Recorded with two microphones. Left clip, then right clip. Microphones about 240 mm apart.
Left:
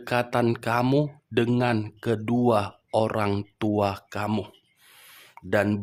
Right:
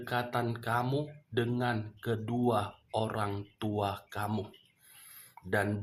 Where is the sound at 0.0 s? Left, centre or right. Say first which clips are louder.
Left 9 dB; left.